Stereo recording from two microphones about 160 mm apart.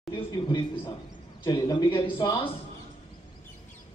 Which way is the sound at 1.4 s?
25° left (ahead or behind).